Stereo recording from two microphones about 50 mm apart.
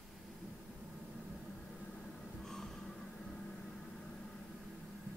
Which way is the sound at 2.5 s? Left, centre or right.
Centre.